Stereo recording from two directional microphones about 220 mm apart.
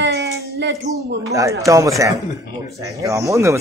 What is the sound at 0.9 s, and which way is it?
Speech, 15° right (ahead or behind).